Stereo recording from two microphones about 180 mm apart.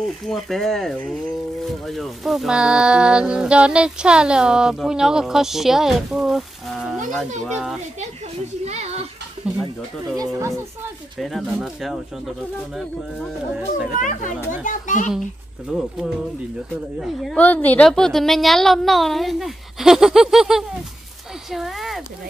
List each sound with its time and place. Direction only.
0.3 s speech: centre (ahead or behind)
7.4 s speech: centre (ahead or behind)
8.6 s a sound: 35° right (ahead or behind)
9.5 s a sound: 5° right (ahead or behind)
10.1 s speech: 20° right (ahead or behind)
11.1 s speech: centre (ahead or behind)
13.9 s a child's voice: 45° left (ahead or behind)
15.7 s speech: 5° right (ahead or behind)
17.0 s speech: centre (ahead or behind)